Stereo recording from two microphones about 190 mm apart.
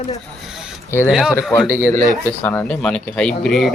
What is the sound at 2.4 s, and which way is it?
Speech, 10° left (ahead or behind).